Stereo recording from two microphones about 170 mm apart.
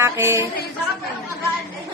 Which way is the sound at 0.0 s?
15° right (ahead or behind).